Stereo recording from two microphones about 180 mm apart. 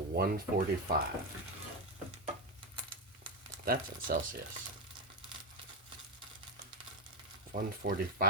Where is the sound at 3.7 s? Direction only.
50° right (ahead or behind).